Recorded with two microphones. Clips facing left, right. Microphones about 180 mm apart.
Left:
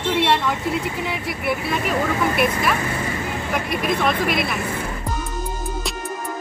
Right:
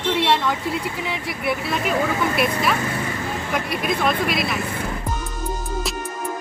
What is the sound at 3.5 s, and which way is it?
Speech, centre (ahead or behind).